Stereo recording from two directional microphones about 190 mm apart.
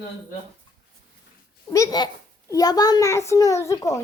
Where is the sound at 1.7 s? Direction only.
20° left (ahead or behind).